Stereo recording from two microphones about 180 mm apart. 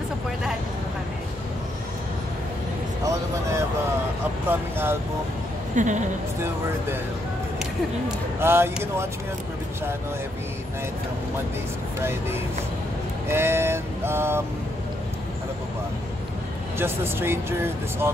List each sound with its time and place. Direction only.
3.1 s speech: 15° right (ahead or behind)
5.8 s a woman's voice: 45° right (ahead or behind)
8.4 s speech: 15° right (ahead or behind)
12.0 s speech: 15° right (ahead or behind)
16.7 s speech: 15° right (ahead or behind)